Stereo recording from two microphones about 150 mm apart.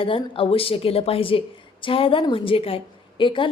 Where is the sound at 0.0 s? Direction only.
35° left (ahead or behind).